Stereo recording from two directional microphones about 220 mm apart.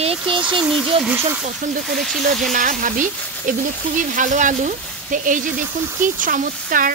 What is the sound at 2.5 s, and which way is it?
Speech, 35° right (ahead or behind).